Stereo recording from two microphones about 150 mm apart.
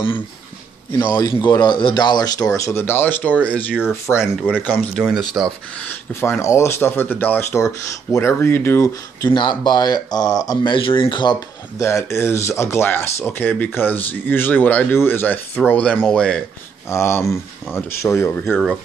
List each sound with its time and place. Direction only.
1.1 s speech: 30° left (ahead or behind); by 4.6 s 15° left (ahead or behind)
5.4 s speech: 20° right (ahead or behind)
5.9 s speech: 15° left (ahead or behind)
9.3 s speech: 30° left (ahead or behind); by 16.4 s 5° left (ahead or behind)
16.9 s speech: 20° left (ahead or behind)